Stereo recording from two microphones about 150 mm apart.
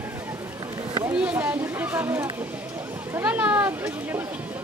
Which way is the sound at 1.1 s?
10° right (ahead or behind).